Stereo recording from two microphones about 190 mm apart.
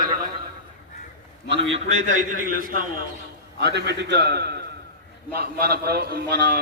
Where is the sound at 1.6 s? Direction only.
35° right (ahead or behind).